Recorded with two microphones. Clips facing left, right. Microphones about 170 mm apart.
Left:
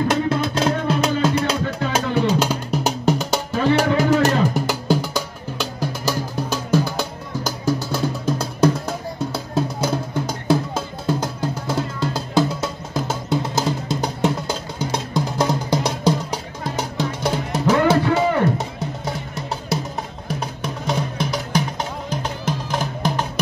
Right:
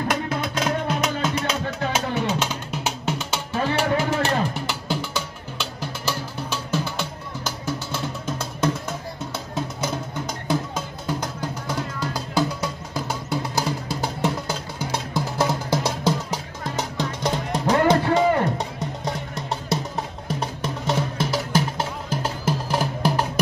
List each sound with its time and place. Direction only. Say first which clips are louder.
0.1 s music: left 5 dB; 30° left (ahead or behind); by 23.4 s 10° right (ahead or behind)